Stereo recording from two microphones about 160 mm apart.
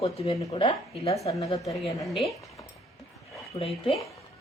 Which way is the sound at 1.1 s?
20° left (ahead or behind).